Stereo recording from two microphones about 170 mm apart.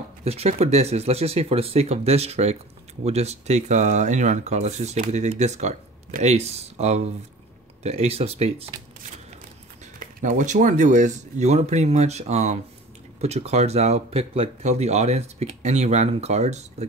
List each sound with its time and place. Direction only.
0.2 s speech: 35° right (ahead or behind)
9.9 s speech: 50° right (ahead or behind)